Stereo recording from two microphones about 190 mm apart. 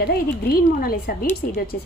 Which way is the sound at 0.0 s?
55° left (ahead or behind).